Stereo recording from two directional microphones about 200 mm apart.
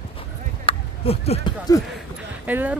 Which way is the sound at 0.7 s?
30° left (ahead or behind).